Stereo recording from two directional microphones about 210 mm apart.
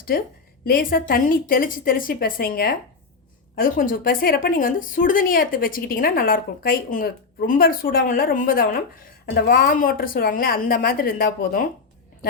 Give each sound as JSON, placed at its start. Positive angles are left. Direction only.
{"t": 0.6, "sound": "a woman's voice", "side_deg": 45}